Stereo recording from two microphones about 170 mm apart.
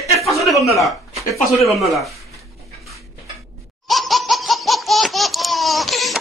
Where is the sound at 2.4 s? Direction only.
Centre (ahead or behind).